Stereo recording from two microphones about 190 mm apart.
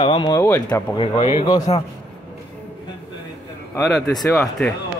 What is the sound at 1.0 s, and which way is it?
Speech, 30° left (ahead or behind).